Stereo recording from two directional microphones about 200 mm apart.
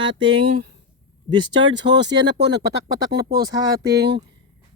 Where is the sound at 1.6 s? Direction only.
60° right (ahead or behind).